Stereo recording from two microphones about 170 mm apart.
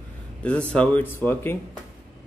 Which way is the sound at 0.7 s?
10° left (ahead or behind).